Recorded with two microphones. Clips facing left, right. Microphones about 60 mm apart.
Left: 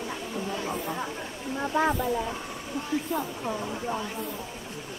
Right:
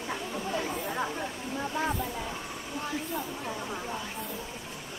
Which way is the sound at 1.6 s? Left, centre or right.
Left.